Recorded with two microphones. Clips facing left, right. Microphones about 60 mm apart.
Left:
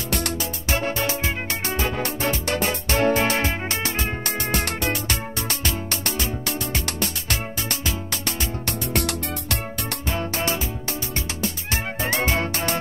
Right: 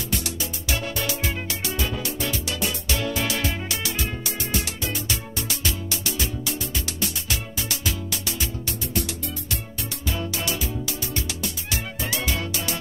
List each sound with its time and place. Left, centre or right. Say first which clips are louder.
0.1 s music: left 5 dB; left
0.7 s music: left 4 dB; left
4.2 s music: left 4 dB; left
8.9 s music: left 4 dB; left
10.0 s music: left 3 dB; left